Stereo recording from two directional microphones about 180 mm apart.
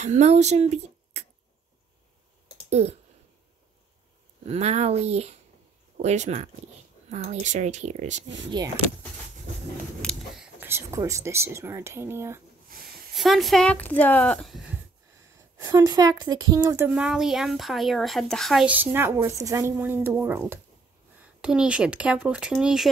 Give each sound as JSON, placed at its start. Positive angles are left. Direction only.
{"t": 0.0, "sound": "speech", "side_deg": -40}
{"t": 2.7, "sound": "speech", "side_deg": -35}
{"t": 4.5, "sound": "speech", "side_deg": -35}
{"t": 10.0, "sound": "a sound", "side_deg": 0}
{"t": 10.6, "sound": "speech", "side_deg": -15}
{"t": 12.6, "sound": "a sound", "side_deg": -55}
{"t": 13.1, "sound": "speech", "side_deg": 0}
{"t": 15.3, "sound": "a woman's voice", "side_deg": -20}
{"t": 16.9, "sound": "speech", "side_deg": -5}